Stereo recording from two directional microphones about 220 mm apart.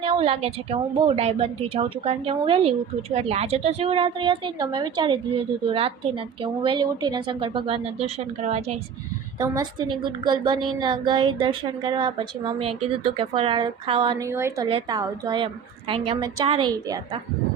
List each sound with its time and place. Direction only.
0.0 s a woman's voice: 25° right (ahead or behind)
9.4 s a woman's voice: 15° right (ahead or behind)